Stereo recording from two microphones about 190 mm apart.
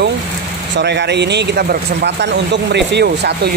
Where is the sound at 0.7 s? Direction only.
60° right (ahead or behind).